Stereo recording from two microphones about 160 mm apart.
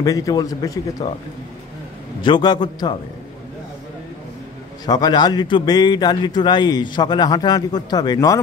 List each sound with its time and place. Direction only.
0.0 s a man's voice: 20° left (ahead or behind)
2.2 s a man's voice: 30° left (ahead or behind)
4.8 s a man's voice: 25° left (ahead or behind)